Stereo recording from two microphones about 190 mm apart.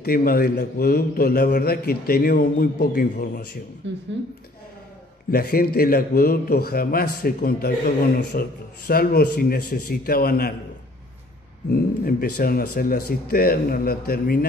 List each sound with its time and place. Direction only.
0.0 s a man's voice: 50° left (ahead or behind)
3.8 s speech: 70° right (ahead or behind)
5.3 s a man's voice: 50° left (ahead or behind)
11.7 s a man's voice: 50° left (ahead or behind)